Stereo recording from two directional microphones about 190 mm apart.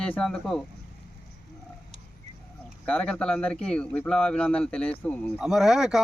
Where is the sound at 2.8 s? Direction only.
5° left (ahead or behind).